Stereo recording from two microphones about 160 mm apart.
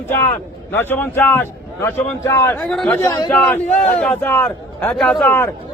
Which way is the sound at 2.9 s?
20° left (ahead or behind).